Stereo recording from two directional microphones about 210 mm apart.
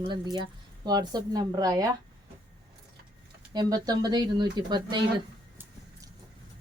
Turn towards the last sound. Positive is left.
turn(degrees=-20)  # may be behind; listen again after turning